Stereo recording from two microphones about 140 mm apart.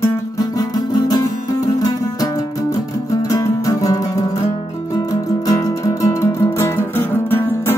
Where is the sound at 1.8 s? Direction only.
25° left (ahead or behind).